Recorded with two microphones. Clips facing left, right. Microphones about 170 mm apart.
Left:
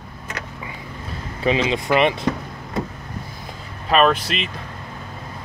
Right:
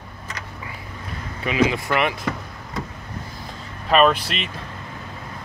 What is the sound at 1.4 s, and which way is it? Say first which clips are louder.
Speech: left 1 dB; 30° left (ahead or behind).